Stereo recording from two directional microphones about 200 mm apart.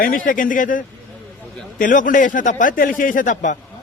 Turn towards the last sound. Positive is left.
turn(degrees=40)  # may be behind; listen again after turning